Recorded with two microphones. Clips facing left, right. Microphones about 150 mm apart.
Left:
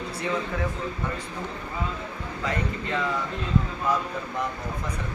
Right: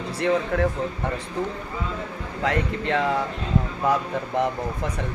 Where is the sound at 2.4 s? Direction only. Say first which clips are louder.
Right 5 dB; 70° right (ahead or behind).